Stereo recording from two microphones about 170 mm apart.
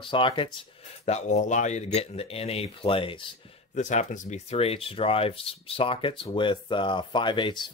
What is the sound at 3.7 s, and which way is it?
Speech, 45° left (ahead or behind).